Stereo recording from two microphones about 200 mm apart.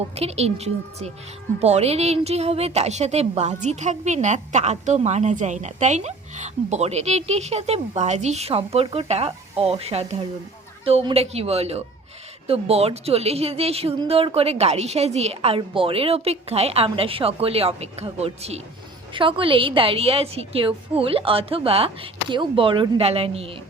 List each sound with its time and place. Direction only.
0.1 s a woman's voice: 30° right (ahead or behind)